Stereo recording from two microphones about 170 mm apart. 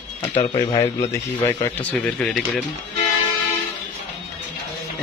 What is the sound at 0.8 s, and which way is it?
Speech, 15° left (ahead or behind).